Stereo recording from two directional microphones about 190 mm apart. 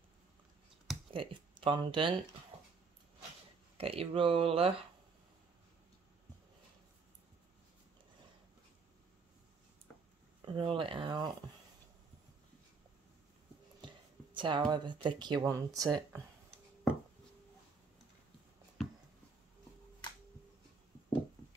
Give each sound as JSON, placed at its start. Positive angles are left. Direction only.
{"t": 1.1, "sound": "speech", "side_deg": -25}
{"t": 3.7, "sound": "speech", "side_deg": -30}
{"t": 10.4, "sound": "speech", "side_deg": -25}
{"t": 13.8, "sound": "a sound", "side_deg": -25}
{"t": 14.7, "sound": "speech", "side_deg": -25}